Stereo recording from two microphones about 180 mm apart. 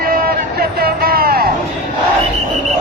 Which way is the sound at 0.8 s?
55° right (ahead or behind).